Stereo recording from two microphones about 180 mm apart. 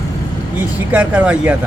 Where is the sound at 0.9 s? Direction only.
10° right (ahead or behind).